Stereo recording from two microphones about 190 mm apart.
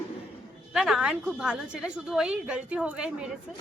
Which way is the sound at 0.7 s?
5° right (ahead or behind).